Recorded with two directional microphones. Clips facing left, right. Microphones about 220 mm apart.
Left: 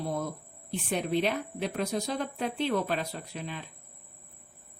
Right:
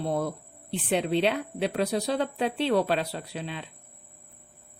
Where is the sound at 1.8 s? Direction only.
35° right (ahead or behind).